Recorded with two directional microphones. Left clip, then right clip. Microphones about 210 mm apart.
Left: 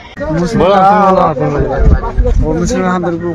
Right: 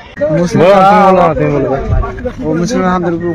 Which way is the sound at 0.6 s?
25° right (ahead or behind).